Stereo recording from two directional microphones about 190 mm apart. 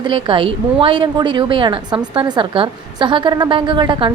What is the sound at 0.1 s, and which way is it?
A woman's voice, 25° right (ahead or behind).